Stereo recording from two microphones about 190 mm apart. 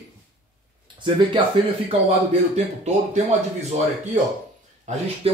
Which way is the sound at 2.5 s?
35° right (ahead or behind).